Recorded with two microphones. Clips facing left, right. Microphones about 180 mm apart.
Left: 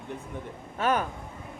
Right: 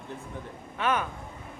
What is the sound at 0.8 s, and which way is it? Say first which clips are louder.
Speech: left 2 dB; 40° left (ahead or behind).